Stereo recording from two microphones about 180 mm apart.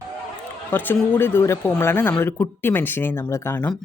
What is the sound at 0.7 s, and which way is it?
Speech, 10° left (ahead or behind).